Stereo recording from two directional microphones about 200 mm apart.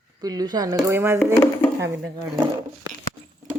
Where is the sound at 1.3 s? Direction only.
10° left (ahead or behind).